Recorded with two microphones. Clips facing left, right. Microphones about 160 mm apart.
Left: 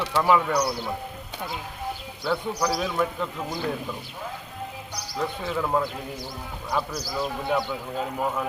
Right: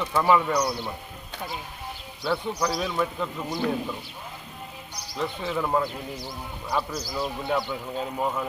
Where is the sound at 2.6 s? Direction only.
10° left (ahead or behind).